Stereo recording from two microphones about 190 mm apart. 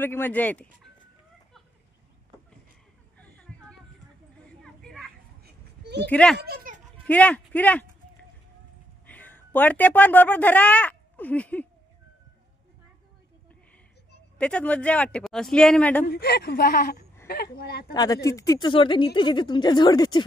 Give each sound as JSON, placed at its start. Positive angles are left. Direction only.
{"t": 0.0, "sound": "a man's voice", "side_deg": 10}
{"t": 3.2, "sound": "a sound", "side_deg": 5}
{"t": 5.4, "sound": "children playing", "side_deg": -60}
{"t": 6.0, "sound": "a man's voice", "side_deg": 5}
{"t": 6.4, "sound": "a sound", "side_deg": -50}
{"t": 7.1, "sound": "a man's voice", "side_deg": 5}
{"t": 9.0, "sound": "speech", "side_deg": 10}
{"t": 14.4, "sound": "speech", "side_deg": 5}
{"t": 16.1, "sound": "a woman's voice", "side_deg": 55}
{"t": 17.9, "sound": "speech", "side_deg": 20}